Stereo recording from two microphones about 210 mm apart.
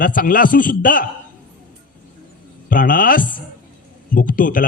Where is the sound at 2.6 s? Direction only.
40° left (ahead or behind).